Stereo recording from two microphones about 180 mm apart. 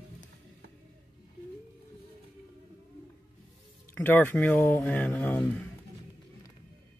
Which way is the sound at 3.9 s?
10° left (ahead or behind).